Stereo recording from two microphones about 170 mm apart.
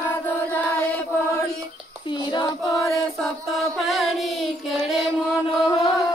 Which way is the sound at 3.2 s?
Centre (ahead or behind).